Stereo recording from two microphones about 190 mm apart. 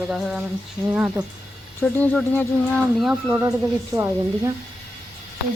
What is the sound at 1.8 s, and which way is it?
Speech, 10° left (ahead or behind).